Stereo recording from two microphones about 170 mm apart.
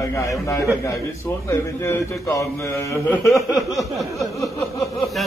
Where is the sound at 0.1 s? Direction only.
15° left (ahead or behind).